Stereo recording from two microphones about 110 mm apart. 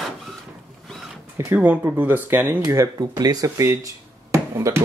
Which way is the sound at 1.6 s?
15° right (ahead or behind).